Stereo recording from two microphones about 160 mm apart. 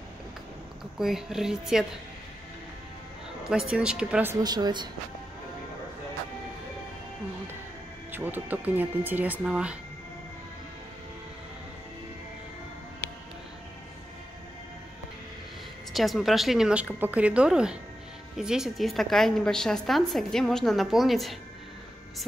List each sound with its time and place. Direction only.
0.9 s a woman's voice: centre (ahead or behind)
3.7 s speech: 5° right (ahead or behind)
4.4 s a woman's voice: 25° right (ahead or behind)
8.1 s speech: 10° right (ahead or behind)
15.9 s a woman's voice: centre (ahead or behind)